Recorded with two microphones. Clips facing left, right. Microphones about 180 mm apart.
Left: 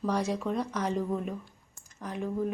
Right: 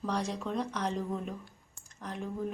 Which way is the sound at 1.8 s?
5° left (ahead or behind).